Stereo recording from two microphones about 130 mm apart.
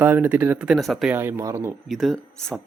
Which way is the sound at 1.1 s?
15° right (ahead or behind).